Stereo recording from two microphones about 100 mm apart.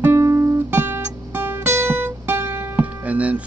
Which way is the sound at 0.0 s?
30° right (ahead or behind).